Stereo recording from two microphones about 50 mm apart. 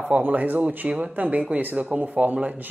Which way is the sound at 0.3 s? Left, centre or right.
Right.